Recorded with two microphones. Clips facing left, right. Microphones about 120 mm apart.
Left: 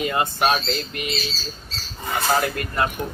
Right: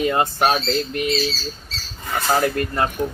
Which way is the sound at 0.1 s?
30° right (ahead or behind).